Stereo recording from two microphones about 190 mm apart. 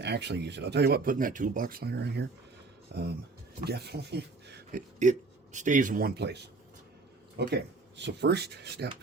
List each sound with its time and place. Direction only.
0.0 s speech: 60° right (ahead or behind)
4.9 s speech: 40° right (ahead or behind); by 8.9 s 60° right (ahead or behind)